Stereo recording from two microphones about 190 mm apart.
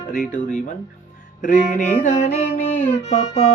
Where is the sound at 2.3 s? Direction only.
35° left (ahead or behind).